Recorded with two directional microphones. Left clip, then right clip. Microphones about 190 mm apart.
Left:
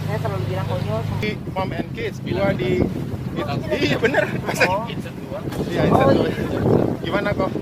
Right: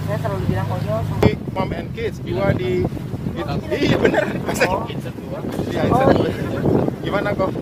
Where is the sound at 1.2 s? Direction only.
55° right (ahead or behind).